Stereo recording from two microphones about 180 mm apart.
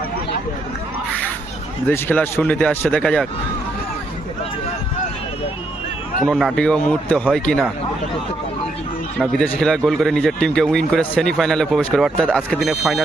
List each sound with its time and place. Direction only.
1.9 s speech: 10° left (ahead or behind)
6.2 s speech: centre (ahead or behind)
9.1 s speech: 5° left (ahead or behind)